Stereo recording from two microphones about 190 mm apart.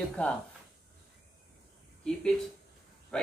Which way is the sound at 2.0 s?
5° left (ahead or behind).